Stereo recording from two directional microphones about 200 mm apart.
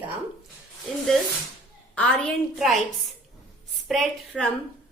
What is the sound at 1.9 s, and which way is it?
Speech, 5° left (ahead or behind).